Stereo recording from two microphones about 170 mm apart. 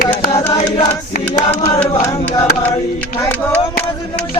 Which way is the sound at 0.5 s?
30° left (ahead or behind).